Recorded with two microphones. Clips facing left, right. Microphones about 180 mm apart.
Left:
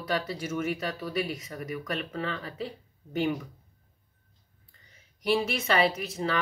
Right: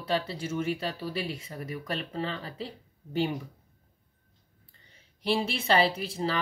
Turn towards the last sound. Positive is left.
turn(degrees=-30)  # may be behind; listen again after turning